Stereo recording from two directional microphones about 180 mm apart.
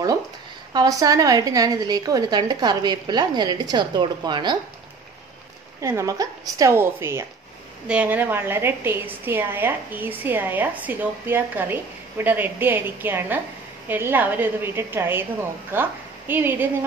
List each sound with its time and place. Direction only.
0.7 s a woman's voice: 20° right (ahead or behind)
5.8 s a woman's voice: 15° right (ahead or behind)